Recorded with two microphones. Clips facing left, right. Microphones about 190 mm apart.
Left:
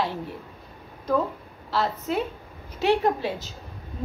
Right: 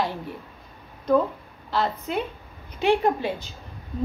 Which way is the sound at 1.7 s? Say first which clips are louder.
Even; 5° left (ahead or behind).